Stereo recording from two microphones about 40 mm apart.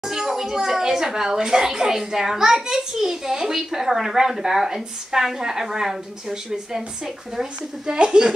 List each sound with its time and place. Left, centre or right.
0.0 s a child's voice: centre
7.8 s a woman's voice: right